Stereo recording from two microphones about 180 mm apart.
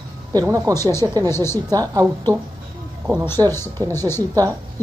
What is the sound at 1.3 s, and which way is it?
Speech, 15° left (ahead or behind).